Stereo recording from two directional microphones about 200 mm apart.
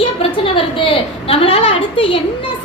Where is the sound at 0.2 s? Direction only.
25° left (ahead or behind).